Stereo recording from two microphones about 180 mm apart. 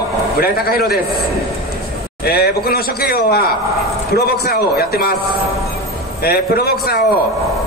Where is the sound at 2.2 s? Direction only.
60° left (ahead or behind).